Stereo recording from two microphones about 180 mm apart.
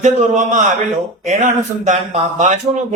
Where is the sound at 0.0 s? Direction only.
40° right (ahead or behind).